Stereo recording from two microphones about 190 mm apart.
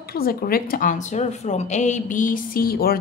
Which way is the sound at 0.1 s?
50° left (ahead or behind).